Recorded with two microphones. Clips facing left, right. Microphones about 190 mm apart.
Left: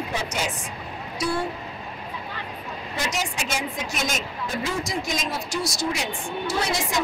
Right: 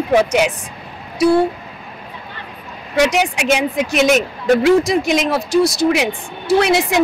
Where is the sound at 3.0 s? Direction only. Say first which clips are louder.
Right 14 dB; 75° right (ahead or behind).